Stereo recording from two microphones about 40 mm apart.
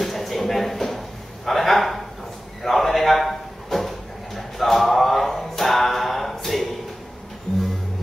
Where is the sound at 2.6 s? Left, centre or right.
Centre.